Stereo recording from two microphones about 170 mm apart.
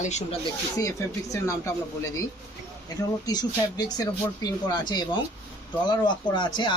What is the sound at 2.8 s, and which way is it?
Speech, 20° left (ahead or behind).